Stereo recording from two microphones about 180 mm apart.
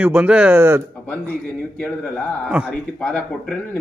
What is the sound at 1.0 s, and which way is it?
Speech, 10° left (ahead or behind).